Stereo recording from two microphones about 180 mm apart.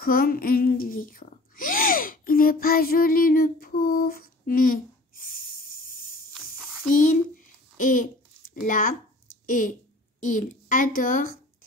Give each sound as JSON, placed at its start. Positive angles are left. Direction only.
{"t": 0.0, "sound": "speech", "side_deg": 55}
{"t": 7.0, "sound": "a sound", "side_deg": 45}
{"t": 9.5, "sound": "speech", "side_deg": 45}